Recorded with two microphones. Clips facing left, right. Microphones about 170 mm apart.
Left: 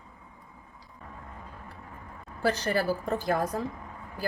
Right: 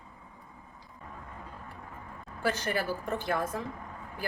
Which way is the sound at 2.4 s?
40° left (ahead or behind).